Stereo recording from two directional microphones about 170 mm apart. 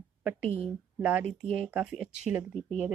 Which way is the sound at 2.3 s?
45° left (ahead or behind).